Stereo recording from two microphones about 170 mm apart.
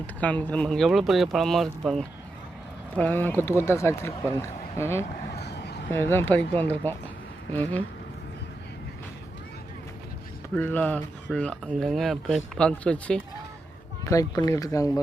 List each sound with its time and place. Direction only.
0.2 s speech: 10° left (ahead or behind)
5.4 s a sound: 75° left (ahead or behind)
5.9 s speech: 15° left (ahead or behind)
10.5 s speech: 10° left (ahead or behind)
14.1 s speech: 20° left (ahead or behind)